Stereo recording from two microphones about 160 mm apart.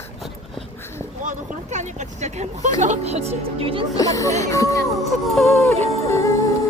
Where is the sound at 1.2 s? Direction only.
50° right (ahead or behind).